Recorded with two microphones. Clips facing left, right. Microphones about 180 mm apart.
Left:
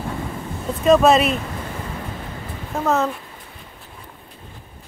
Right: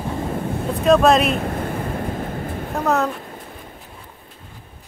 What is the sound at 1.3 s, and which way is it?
Vehicle, 55° right (ahead or behind).